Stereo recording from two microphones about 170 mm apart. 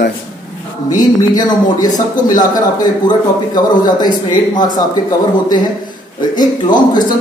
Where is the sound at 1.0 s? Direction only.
25° left (ahead or behind).